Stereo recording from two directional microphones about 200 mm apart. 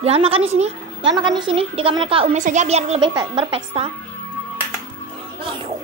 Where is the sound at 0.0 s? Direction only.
30° right (ahead or behind).